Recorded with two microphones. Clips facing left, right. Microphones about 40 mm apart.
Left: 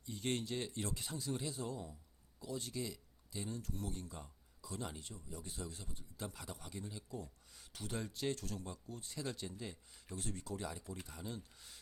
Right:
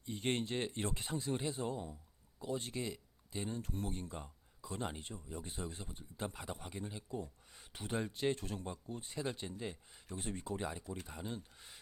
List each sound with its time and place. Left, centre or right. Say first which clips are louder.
0.0 s speech: right 3 dB; right